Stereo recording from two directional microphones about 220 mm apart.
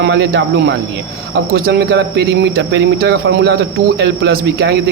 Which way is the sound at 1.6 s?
50° right (ahead or behind).